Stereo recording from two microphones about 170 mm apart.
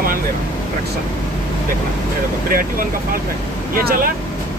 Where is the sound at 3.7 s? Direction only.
60° right (ahead or behind).